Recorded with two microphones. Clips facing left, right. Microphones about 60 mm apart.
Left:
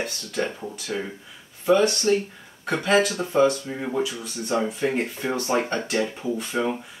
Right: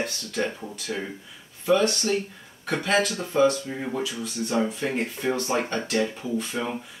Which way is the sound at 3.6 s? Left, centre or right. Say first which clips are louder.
Left 3 dB; centre.